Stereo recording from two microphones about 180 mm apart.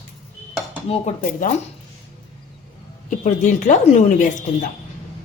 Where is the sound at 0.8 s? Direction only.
35° left (ahead or behind).